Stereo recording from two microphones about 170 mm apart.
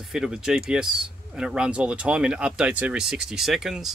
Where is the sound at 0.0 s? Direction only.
Centre (ahead or behind).